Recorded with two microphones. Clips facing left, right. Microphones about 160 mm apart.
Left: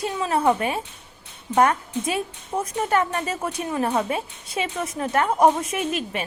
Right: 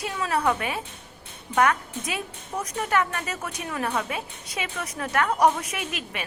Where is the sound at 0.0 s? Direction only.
30° left (ahead or behind).